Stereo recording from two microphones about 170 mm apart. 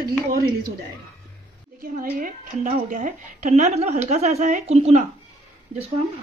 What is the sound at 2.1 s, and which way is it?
A woman's voice, 50° right (ahead or behind).